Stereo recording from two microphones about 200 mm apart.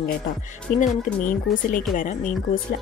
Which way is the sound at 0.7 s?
40° left (ahead or behind).